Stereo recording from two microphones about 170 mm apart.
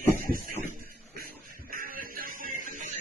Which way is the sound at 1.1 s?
55° right (ahead or behind).